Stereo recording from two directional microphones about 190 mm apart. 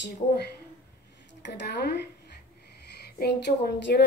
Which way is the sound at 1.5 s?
60° left (ahead or behind).